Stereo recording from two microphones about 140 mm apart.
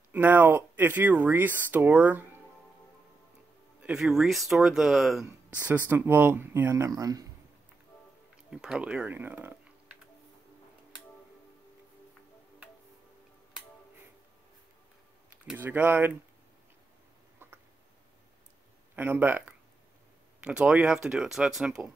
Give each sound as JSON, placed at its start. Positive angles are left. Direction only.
{"t": 0.1, "sound": "speech", "side_deg": -15}
{"t": 3.8, "sound": "speech", "side_deg": -5}
{"t": 5.2, "sound": "speech", "side_deg": -20}
{"t": 8.5, "sound": "speech", "side_deg": -5}
{"t": 15.4, "sound": "speech", "side_deg": -15}
{"t": 18.9, "sound": "speech", "side_deg": -15}